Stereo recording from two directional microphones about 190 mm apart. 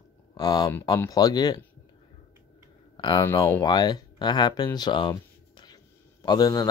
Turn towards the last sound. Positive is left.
turn(degrees=20)  # may be behind; listen again after turning